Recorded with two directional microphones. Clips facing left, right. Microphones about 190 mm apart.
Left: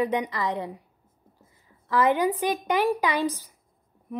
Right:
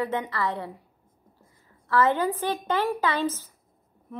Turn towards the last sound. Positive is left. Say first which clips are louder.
# left 1 dB
turn(degrees=15)  # may be behind; listen again after turning